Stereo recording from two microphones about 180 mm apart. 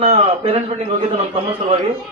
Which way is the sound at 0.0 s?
35° right (ahead or behind).